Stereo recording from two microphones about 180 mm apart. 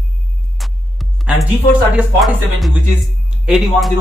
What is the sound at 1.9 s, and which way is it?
Speech, 5° right (ahead or behind).